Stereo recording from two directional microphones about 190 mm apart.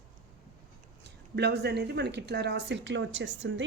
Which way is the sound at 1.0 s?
60° right (ahead or behind).